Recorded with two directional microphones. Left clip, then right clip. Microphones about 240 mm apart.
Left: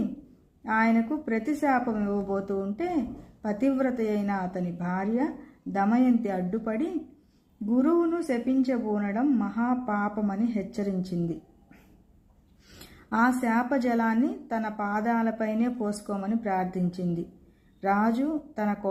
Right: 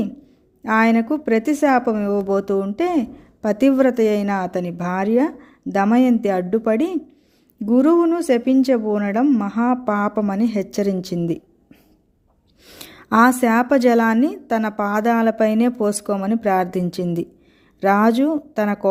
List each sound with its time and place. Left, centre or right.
0.6 s speech: right
12.6 s speech: right